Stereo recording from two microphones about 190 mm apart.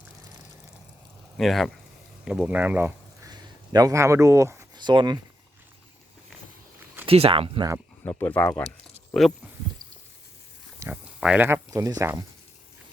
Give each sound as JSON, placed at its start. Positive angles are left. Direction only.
{"t": 1.4, "sound": "a man's voice", "side_deg": 0}
{"t": 7.0, "sound": "speech", "side_deg": -30}
{"t": 8.0, "sound": "speech", "side_deg": 10}
{"t": 10.8, "sound": "speech", "side_deg": -5}